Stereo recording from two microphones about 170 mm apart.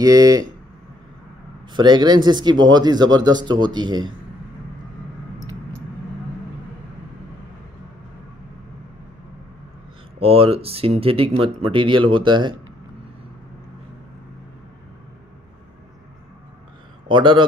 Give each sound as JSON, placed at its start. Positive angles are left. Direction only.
{"t": 0.0, "sound": "speech", "side_deg": -20}
{"t": 1.7, "sound": "speech", "side_deg": -25}
{"t": 10.2, "sound": "speech", "side_deg": -35}
{"t": 17.1, "sound": "speech", "side_deg": -30}